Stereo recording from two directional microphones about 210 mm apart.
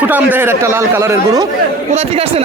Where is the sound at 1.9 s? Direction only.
30° right (ahead or behind).